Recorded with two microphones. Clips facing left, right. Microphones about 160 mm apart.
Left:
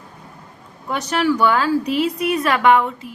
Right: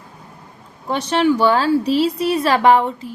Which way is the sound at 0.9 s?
30° right (ahead or behind).